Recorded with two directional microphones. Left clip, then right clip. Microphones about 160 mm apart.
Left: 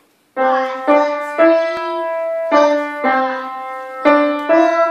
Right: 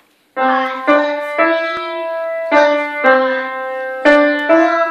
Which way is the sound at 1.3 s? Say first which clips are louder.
Left 3 dB; 30° left (ahead or behind).